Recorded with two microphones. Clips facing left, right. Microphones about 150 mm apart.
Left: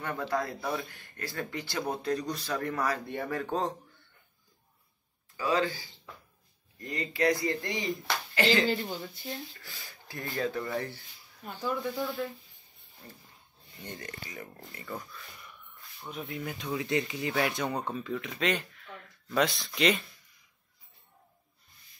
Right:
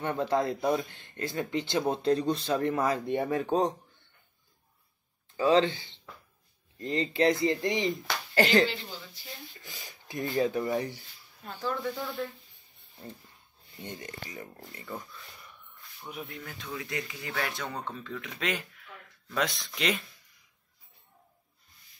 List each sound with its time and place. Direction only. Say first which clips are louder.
0.0 s speech: right 4 dB; 25° right (ahead or behind)
5.4 s speech: right 5 dB; 25° right (ahead or behind)
8.6 s speech: left 5 dB; 55° left (ahead or behind)
9.6 s speech: right 2 dB; 20° right (ahead or behind)
11.4 s speech: even; 10° left (ahead or behind)
11.8 s speech: left 1 dB; centre (ahead or behind)
13.8 s speech: right 1 dB; 20° right (ahead or behind)
16.3 s speech: left 6 dB; 10° left (ahead or behind)